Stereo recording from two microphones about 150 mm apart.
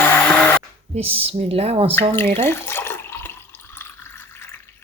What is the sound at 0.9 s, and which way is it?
Speech, 40° right (ahead or behind).